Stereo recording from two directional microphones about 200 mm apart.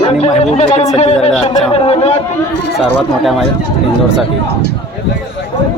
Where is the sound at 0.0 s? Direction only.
30° left (ahead or behind).